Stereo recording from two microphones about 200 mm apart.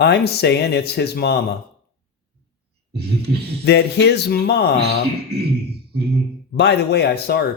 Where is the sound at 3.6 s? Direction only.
55° left (ahead or behind).